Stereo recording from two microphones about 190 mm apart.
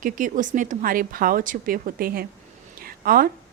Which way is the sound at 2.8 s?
50° right (ahead or behind).